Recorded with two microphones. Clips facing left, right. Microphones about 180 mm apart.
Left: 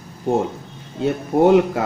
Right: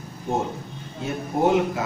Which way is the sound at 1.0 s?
65° left (ahead or behind).